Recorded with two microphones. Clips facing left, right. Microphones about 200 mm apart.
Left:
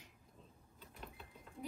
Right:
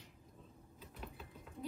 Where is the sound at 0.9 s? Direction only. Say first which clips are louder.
Right 3 dB; 5° right (ahead or behind).